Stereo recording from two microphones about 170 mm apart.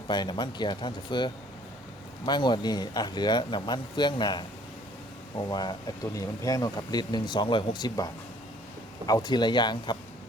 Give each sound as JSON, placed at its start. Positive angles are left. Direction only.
{"t": 0.1, "sound": "speech", "side_deg": 25}